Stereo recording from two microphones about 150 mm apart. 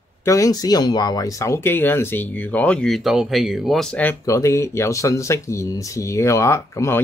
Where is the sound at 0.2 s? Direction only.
20° left (ahead or behind); by 4.0 s centre (ahead or behind).